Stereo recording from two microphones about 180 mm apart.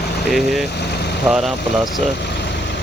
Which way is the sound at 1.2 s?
Centre (ahead or behind).